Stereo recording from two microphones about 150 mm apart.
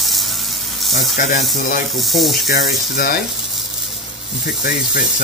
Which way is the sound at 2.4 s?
70° left (ahead or behind).